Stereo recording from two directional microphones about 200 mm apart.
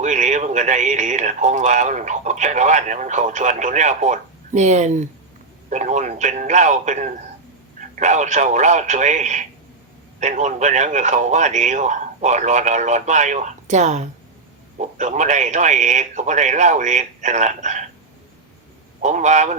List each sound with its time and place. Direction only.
0.0 s speech: 35° right (ahead or behind)
19.0 s speech: 35° right (ahead or behind)